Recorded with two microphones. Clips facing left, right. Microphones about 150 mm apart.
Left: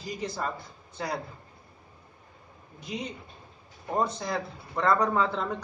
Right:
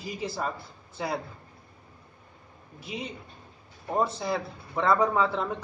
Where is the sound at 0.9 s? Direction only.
5° right (ahead or behind).